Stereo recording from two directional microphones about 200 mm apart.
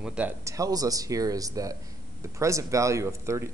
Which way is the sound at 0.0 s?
5° right (ahead or behind).